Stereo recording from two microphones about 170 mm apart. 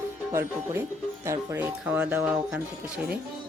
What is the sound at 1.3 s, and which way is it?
Speech, 10° right (ahead or behind).